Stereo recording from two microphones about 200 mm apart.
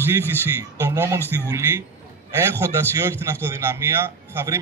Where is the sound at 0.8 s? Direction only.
15° right (ahead or behind).